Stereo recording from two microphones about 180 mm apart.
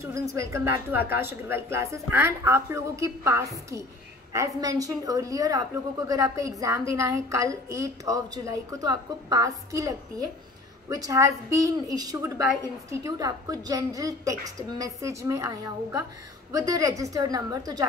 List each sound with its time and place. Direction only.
0.0 s a woman's voice: 15° right (ahead or behind)